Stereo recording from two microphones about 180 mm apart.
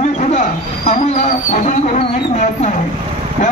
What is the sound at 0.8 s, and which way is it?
Speech, 40° left (ahead or behind).